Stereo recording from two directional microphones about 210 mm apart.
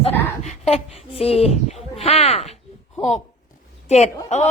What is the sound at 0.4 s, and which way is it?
Speech, 30° left (ahead or behind).